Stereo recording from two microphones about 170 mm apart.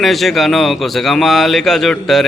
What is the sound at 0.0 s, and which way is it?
Speech, centre (ahead or behind).